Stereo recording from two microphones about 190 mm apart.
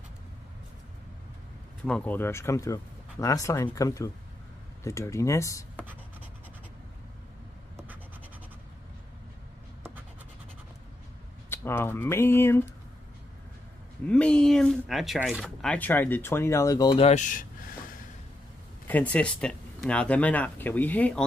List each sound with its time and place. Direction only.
1.9 s speech: 5° left (ahead or behind)
11.5 s speech: 10° left (ahead or behind)
14.0 s speech: 5° left (ahead or behind); by 17.7 s 45° left (ahead or behind)
18.9 s speech: 10° left (ahead or behind)